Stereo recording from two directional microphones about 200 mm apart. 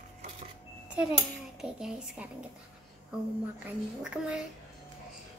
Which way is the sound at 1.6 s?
5° right (ahead or behind).